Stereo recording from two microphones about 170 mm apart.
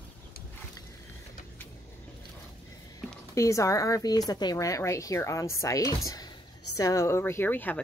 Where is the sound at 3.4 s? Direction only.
20° left (ahead or behind).